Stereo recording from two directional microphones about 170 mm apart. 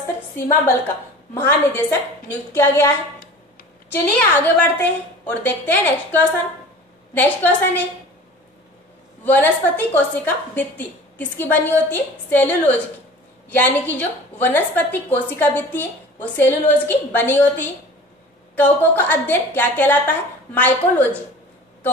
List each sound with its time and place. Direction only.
1.3 s a woman's voice: 15° left (ahead or behind)
3.9 s a woman's voice: 10° left (ahead or behind)
9.2 s a woman's voice: 10° left (ahead or behind)